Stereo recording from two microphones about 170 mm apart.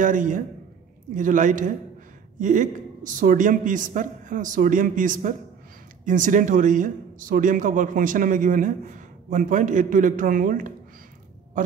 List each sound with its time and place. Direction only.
0.0 s speech: 50° right (ahead or behind)